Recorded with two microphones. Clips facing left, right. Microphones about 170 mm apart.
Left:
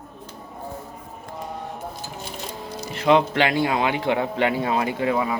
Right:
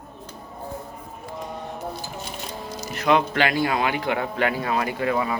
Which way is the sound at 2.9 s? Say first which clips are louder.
Left 2 dB; 25° left (ahead or behind).